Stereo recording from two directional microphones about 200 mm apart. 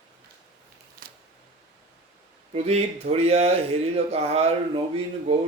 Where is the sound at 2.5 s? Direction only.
30° right (ahead or behind).